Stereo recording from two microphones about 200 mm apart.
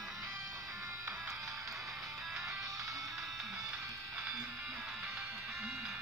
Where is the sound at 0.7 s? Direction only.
15° right (ahead or behind).